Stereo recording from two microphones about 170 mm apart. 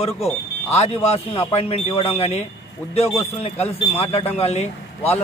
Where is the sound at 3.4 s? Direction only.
40° left (ahead or behind).